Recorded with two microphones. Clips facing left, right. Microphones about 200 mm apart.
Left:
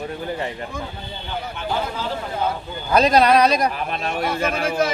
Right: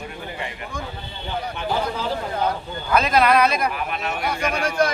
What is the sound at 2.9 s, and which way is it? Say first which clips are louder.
Speech: left 3 dB; 35° left (ahead or behind).